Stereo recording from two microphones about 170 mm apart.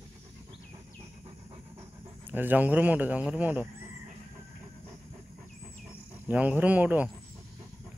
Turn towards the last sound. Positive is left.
turn(degrees=-10)  # may be behind; listen again after turning